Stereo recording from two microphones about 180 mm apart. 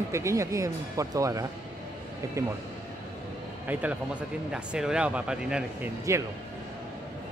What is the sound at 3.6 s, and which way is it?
Speech, 5° right (ahead or behind).